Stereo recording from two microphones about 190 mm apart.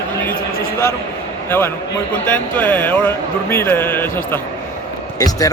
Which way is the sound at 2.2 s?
10° left (ahead or behind).